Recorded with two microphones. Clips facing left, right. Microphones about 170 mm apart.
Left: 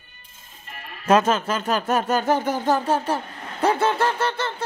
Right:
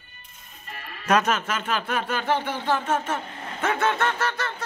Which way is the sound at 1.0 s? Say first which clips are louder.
Left 4 dB; 25° left (ahead or behind).